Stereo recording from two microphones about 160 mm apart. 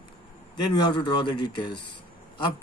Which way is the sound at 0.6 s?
25° left (ahead or behind).